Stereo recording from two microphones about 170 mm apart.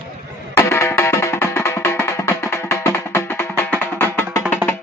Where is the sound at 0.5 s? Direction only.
15° left (ahead or behind).